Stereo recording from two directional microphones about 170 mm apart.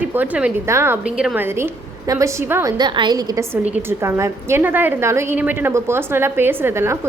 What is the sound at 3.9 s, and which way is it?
A woman's voice, 15° right (ahead or behind).